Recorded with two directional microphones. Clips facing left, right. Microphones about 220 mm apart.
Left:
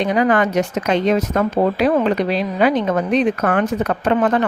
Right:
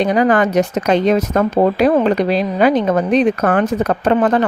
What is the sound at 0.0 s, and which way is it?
Speech, 35° right (ahead or behind).